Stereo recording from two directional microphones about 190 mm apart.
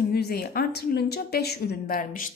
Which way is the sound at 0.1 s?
55° left (ahead or behind).